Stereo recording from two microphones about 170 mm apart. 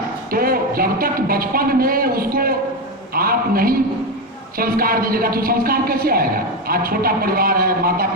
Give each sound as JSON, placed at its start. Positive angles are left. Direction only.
{"t": 0.3, "sound": "a man's voice", "side_deg": -60}